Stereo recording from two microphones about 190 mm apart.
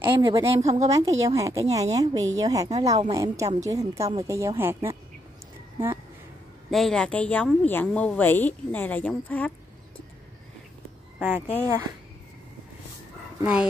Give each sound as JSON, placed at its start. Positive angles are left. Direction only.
{"t": 0.0, "sound": "a woman's voice", "side_deg": -15}
{"t": 6.7, "sound": "a woman's voice", "side_deg": 0}
{"t": 11.1, "sound": "speech", "side_deg": -10}
{"t": 13.4, "sound": "speech", "side_deg": -5}